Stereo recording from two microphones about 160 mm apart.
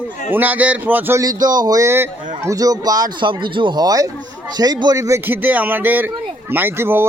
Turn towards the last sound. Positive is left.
turn(degrees=-15)  # may be behind; listen again after turning